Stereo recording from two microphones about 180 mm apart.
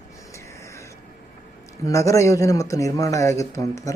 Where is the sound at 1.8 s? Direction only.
15° left (ahead or behind).